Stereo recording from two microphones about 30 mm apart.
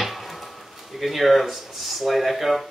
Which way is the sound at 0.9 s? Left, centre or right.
Centre.